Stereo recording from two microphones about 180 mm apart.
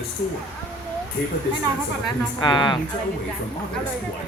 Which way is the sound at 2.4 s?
25° left (ahead or behind).